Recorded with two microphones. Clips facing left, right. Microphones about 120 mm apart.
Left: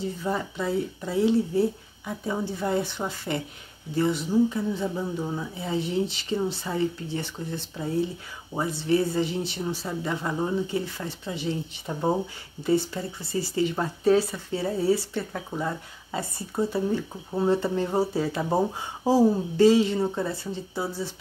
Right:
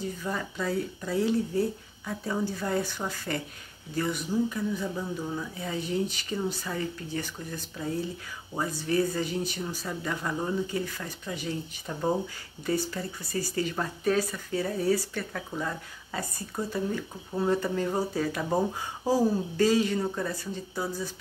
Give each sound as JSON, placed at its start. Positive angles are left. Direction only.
{"t": 0.0, "sound": "speech", "side_deg": 25}